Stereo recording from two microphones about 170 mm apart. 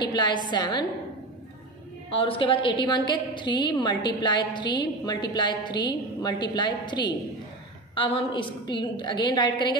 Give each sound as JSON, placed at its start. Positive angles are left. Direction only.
{"t": 0.0, "sound": "a woman's voice", "side_deg": 25}
{"t": 2.0, "sound": "a woman's voice", "side_deg": 30}